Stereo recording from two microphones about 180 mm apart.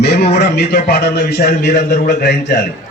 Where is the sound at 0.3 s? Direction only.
65° left (ahead or behind).